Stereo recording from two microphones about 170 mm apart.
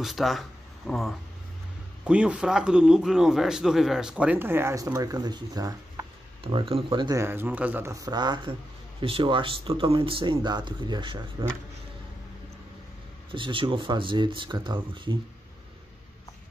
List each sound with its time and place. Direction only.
0.0 s a man's voice: centre (ahead or behind); by 5.8 s 20° right (ahead or behind)
6.4 s speech: 35° right (ahead or behind)
7.1 s speech: 15° right (ahead or behind)
13.3 s speech: 30° right (ahead or behind)